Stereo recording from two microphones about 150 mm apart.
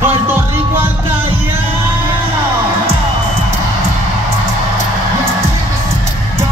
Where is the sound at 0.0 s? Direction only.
15° right (ahead or behind).